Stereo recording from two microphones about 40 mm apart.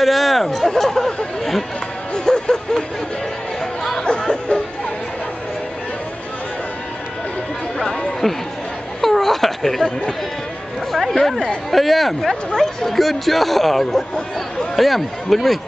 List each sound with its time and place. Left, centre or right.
0.0 s speech: centre
0.7 s chatter: centre
2.1 s music: centre
4.0 s music: centre
9.0 s a sound: centre
10.9 s a sound: centre
11.7 s speech: centre
12.8 s speech: centre